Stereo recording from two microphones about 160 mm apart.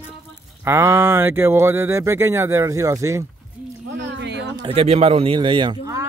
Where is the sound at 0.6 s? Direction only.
15° right (ahead or behind).